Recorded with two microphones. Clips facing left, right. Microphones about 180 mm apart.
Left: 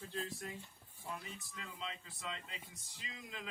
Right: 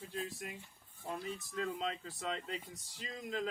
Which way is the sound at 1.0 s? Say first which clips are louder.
Right 6 dB; 40° right (ahead or behind).